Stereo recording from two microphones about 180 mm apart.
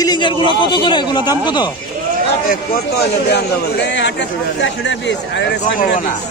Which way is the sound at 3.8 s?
80° left.